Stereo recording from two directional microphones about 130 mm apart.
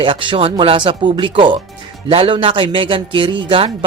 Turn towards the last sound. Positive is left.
turn(degrees=-40)  # may be behind; listen again after turning